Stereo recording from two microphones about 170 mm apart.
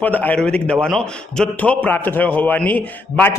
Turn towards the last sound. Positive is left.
turn(degrees=10)  # may be behind; listen again after turning